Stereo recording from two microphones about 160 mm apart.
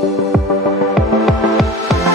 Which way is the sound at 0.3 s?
Centre (ahead or behind).